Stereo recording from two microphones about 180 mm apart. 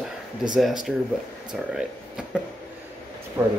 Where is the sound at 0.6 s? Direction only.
Centre (ahead or behind).